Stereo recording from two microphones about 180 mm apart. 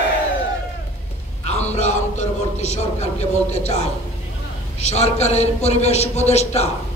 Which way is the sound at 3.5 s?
40° left (ahead or behind).